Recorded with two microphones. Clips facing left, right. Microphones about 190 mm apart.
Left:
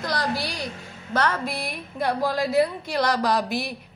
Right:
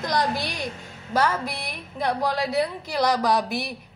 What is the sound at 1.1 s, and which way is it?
A woman's voice, 5° right (ahead or behind).